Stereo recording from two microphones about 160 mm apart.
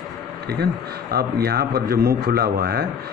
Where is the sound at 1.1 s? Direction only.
75° right (ahead or behind).